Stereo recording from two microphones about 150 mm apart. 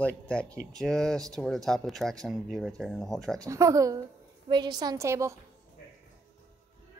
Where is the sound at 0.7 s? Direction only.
5° left (ahead or behind).